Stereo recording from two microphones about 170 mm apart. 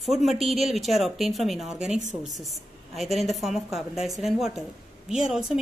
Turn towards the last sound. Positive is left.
turn(degrees=-5)  # may be behind; listen again after turning